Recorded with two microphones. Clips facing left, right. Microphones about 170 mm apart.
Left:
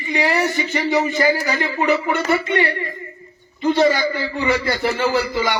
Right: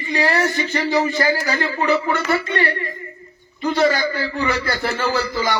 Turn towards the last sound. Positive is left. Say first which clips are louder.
# left 1 dB
turn(degrees=20)  # may be behind; listen again after turning